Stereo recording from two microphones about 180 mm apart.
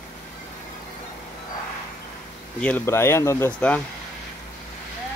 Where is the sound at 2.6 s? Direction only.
10° left (ahead or behind).